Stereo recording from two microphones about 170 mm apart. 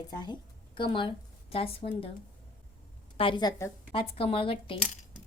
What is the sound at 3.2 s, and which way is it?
A woman's voice, 30° left (ahead or behind).